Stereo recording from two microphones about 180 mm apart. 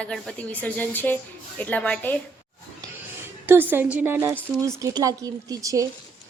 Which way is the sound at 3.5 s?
10° right (ahead or behind).